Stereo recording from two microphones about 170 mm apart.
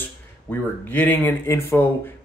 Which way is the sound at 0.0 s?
10° left (ahead or behind).